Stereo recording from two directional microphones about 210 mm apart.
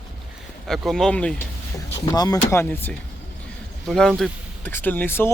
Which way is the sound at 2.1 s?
20° left (ahead or behind).